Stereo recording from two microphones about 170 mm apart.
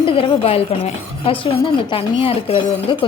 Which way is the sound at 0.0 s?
30° left (ahead or behind).